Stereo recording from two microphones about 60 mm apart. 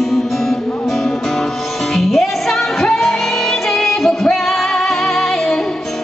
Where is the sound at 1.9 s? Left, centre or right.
Centre.